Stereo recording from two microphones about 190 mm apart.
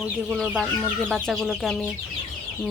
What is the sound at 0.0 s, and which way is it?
Speech, 5° right (ahead or behind).